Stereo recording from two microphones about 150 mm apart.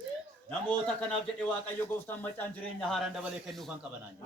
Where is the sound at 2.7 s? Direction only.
5° left (ahead or behind).